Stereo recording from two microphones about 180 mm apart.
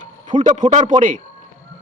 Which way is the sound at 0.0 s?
45° right (ahead or behind).